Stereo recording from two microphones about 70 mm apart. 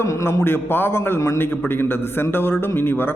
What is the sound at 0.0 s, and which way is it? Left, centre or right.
A man's voice, left.